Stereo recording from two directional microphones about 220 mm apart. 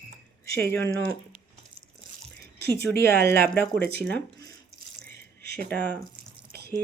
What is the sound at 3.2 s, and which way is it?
A woman's voice, 10° left (ahead or behind).